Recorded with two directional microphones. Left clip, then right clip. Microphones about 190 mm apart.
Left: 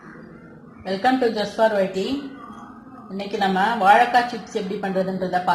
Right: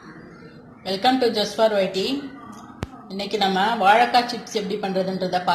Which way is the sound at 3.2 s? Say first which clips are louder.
Even; centre (ahead or behind).